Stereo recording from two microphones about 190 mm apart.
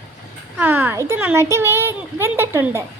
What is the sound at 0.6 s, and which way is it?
A child's voice, 10° right (ahead or behind).